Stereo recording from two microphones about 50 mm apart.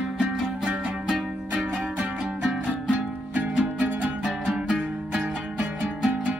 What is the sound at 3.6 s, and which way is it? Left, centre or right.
Music, centre.